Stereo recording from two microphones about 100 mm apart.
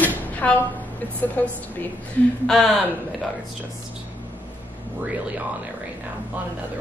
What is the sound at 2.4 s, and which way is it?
Speech, 5° left (ahead or behind).